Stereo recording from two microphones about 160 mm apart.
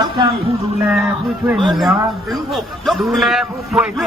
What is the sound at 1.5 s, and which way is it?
Speech, centre (ahead or behind).